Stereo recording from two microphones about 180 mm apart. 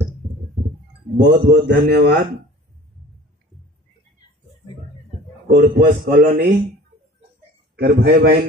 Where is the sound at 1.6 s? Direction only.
70° right (ahead or behind).